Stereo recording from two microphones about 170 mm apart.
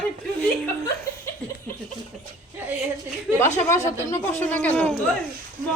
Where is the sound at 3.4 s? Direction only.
45° left (ahead or behind).